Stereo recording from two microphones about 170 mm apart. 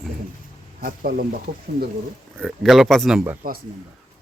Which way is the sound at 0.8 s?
60° right (ahead or behind).